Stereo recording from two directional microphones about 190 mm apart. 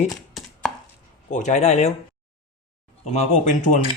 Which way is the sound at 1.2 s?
40° left (ahead or behind).